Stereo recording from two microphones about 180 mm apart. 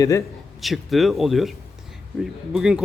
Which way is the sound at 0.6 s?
Centre (ahead or behind).